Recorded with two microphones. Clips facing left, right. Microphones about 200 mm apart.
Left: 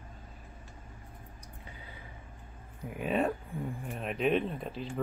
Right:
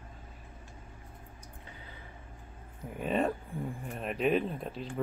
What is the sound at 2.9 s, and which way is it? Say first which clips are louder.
Speech: even; 5° left (ahead or behind).